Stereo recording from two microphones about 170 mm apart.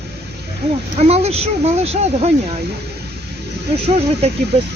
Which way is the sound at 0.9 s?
40° right (ahead or behind).